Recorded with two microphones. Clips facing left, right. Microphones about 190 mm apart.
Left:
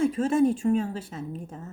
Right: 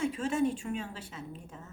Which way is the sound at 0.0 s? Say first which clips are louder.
Left 7 dB; 40° left (ahead or behind).